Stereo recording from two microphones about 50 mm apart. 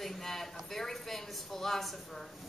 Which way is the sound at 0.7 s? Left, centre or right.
Centre.